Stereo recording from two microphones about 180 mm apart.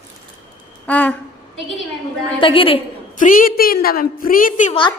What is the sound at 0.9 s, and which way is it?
Speech, 10° left (ahead or behind).